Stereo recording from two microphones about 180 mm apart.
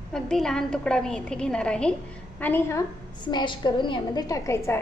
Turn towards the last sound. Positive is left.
turn(degrees=15)  # may be behind; listen again after turning